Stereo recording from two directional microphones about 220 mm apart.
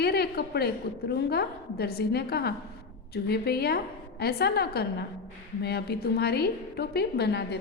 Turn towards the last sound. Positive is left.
turn(degrees=50)  # may be behind; listen again after turning